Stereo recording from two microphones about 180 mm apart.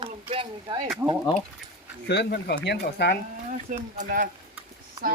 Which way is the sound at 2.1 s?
70° left (ahead or behind).